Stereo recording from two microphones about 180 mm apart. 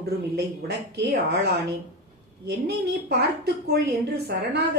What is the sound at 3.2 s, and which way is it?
A woman's voice, 65° right (ahead or behind).